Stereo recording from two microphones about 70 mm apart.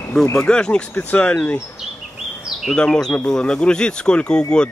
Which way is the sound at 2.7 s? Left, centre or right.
Centre.